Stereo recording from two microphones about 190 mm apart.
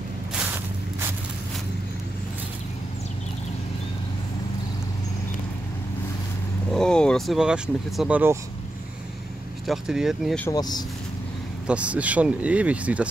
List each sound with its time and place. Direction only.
6.7 s speech: 5° left (ahead or behind)
9.7 s speech: 5° right (ahead or behind)
10.5 s speech: 20° left (ahead or behind)
11.6 s speech: 5° right (ahead or behind)